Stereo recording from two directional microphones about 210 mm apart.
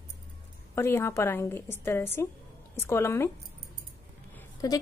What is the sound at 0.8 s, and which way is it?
A woman's voice, 10° left (ahead or behind).